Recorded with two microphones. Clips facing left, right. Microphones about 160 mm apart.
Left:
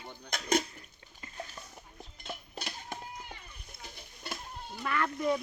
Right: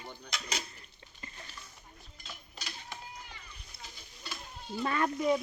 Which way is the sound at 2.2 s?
55° left (ahead or behind).